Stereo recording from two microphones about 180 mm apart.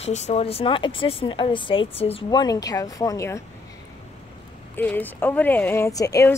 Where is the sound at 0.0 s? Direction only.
35° left (ahead or behind); by 3.4 s 15° left (ahead or behind).